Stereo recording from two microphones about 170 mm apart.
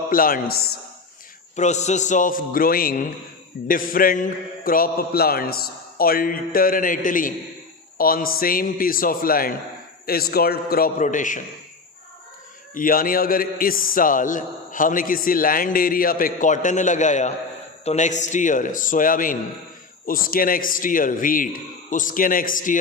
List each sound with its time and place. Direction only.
0.1 s a man's voice: 55° left (ahead or behind)
1.5 s a man's voice: 45° left (ahead or behind)
12.7 s a man's voice: 55° left (ahead or behind)